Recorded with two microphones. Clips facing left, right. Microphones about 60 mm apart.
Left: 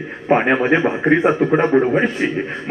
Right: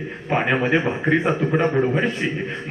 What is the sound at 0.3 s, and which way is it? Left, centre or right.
A man's voice, left.